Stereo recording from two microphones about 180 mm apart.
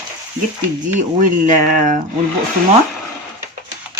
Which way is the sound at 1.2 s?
45° right (ahead or behind).